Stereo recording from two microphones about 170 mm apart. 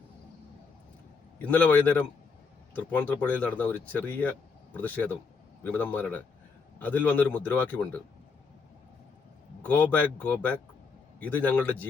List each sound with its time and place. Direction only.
1.5 s speech: 10° left (ahead or behind)
9.6 s speech: 10° left (ahead or behind)